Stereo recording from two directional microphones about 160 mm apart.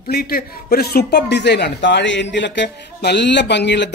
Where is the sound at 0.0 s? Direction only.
70° left (ahead or behind).